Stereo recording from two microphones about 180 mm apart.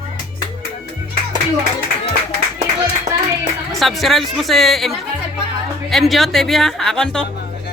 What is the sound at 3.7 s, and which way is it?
Speech, centre (ahead or behind).